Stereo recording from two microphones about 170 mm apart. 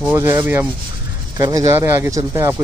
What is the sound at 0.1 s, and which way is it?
Speech, 15° right (ahead or behind).